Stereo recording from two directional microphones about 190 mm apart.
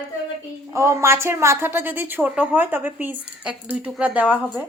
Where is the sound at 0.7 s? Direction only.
15° right (ahead or behind).